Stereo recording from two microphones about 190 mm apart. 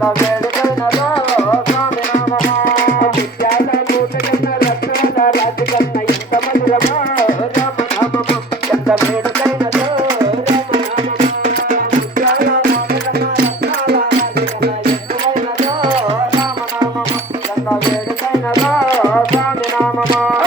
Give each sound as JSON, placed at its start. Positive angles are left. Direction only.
{"t": 2.6, "sound": "music", "side_deg": 45}
{"t": 5.1, "sound": "music", "side_deg": 50}
{"t": 12.4, "sound": "music", "side_deg": -50}